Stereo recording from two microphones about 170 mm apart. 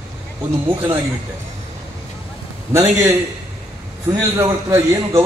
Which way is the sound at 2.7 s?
15° right (ahead or behind).